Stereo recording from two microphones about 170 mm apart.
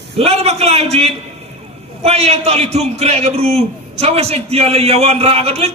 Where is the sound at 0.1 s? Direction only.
40° right (ahead or behind).